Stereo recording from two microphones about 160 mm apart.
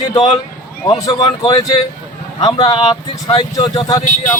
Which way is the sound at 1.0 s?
25° left (ahead or behind).